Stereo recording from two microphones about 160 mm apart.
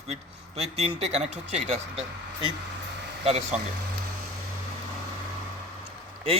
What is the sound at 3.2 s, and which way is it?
Speech, 40° right (ahead or behind).